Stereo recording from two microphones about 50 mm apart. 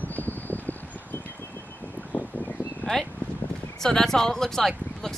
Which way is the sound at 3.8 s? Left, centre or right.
Centre.